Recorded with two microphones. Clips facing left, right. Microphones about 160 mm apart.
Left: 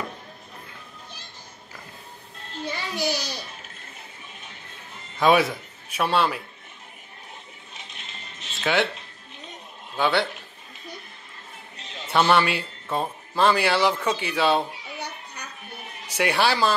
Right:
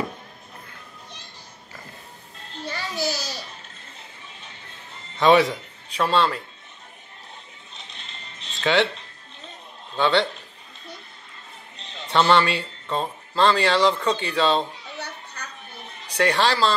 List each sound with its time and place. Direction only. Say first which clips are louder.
2.6 s a child's voice: even; 15° left (ahead or behind)
5.2 s speech: right 2 dB; 5° left (ahead or behind)
8.5 s speech: right 3 dB; 10° left (ahead or behind)
9.9 s speech: right 2 dB; 10° left (ahead or behind)
12.1 s speech: right 1 dB; 5° left (ahead or behind)